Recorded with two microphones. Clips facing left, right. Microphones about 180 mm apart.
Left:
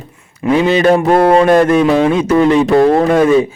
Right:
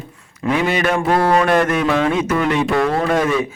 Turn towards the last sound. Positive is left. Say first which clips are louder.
# left 7 dB
turn(degrees=30)  # may be behind; listen again after turning